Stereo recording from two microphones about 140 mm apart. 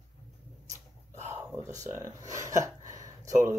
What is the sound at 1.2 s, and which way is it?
Speech, 20° right (ahead or behind).